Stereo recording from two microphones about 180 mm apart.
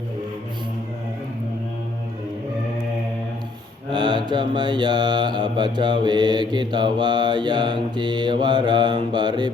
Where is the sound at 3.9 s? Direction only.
25° right (ahead or behind).